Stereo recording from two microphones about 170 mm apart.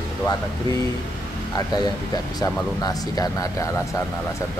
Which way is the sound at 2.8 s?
20° left (ahead or behind).